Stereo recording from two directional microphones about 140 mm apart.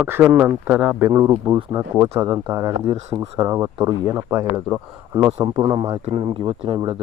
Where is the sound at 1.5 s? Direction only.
30° right (ahead or behind).